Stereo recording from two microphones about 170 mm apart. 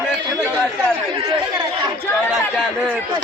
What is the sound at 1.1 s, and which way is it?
Chatter, 25° right (ahead or behind).